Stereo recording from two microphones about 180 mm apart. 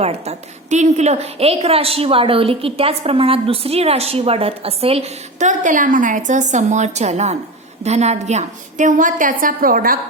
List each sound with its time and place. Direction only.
0.0 s a woman's voice: 35° right (ahead or behind)